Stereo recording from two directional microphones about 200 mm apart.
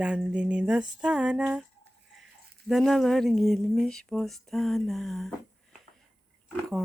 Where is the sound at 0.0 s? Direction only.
5° right (ahead or behind).